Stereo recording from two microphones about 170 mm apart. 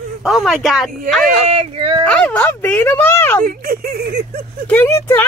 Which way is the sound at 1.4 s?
35° right (ahead or behind).